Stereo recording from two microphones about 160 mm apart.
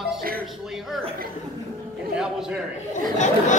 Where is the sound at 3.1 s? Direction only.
50° left (ahead or behind).